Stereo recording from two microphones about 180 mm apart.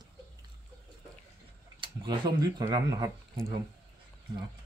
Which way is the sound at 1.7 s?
25° right (ahead or behind).